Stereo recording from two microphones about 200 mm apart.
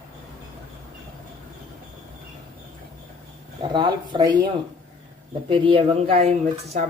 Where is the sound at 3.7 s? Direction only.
20° right (ahead or behind).